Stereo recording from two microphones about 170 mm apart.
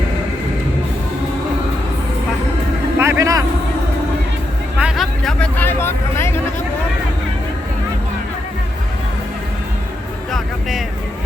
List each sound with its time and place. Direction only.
3.0 s vehicle: 15° right (ahead or behind)
4.8 s vehicle: 5° right (ahead or behind); by 6.4 s 15° left (ahead or behind)
10.3 s vehicle: centre (ahead or behind)